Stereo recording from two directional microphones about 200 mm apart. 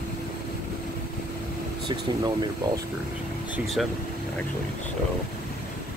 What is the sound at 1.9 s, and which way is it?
Speech, 20° right (ahead or behind).